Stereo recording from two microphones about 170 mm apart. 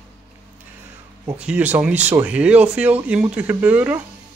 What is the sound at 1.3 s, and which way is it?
Speech, 10° right (ahead or behind).